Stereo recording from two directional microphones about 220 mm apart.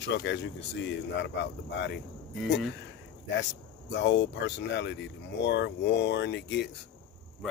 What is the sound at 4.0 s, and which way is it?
Speech, 55° left (ahead or behind).